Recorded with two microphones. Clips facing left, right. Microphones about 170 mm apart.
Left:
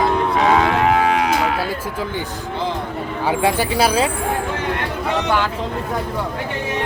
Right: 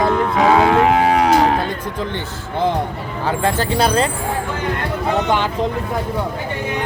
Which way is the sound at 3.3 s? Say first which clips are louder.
Even; 10° left (ahead or behind).